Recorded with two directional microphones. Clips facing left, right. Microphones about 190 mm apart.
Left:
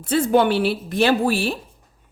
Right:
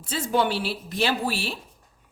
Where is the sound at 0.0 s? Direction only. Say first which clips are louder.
Left 7 dB; 60° left (ahead or behind).